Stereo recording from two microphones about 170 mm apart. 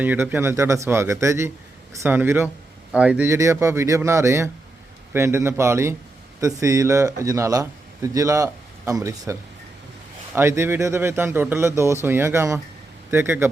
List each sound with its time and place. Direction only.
0.0 s a man's voice: 10° right (ahead or behind)